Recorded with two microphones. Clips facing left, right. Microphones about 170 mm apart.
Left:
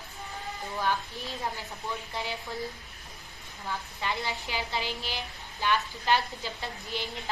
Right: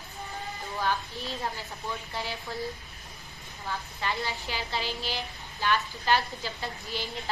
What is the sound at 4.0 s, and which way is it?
A woman's voice, 15° left (ahead or behind).